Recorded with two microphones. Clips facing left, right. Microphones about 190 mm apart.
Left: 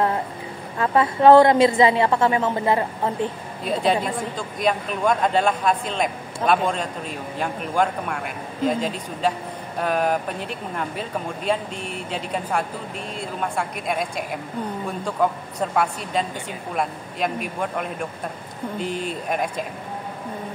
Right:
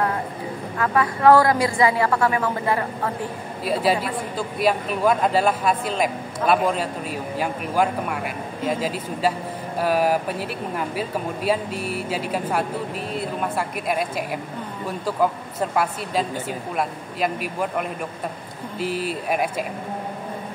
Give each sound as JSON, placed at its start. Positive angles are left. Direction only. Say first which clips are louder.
{"t": 0.7, "sound": "a woman's voice", "louder": "left 3 dB", "side_deg": 25}
{"t": 3.6, "sound": "speech", "louder": "even", "side_deg": -5}